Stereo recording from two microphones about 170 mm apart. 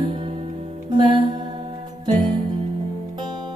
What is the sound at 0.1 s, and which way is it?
Music, 30° right (ahead or behind).